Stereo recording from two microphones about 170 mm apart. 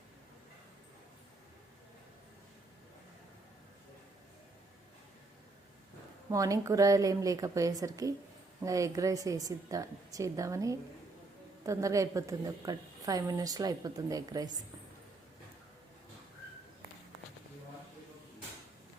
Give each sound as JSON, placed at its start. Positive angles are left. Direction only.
{"t": 6.3, "sound": "a woman's voice", "side_deg": -20}